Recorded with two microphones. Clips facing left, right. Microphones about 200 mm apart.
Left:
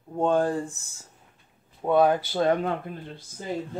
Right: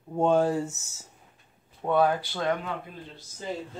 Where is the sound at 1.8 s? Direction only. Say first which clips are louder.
Left 3 dB; 15° left (ahead or behind).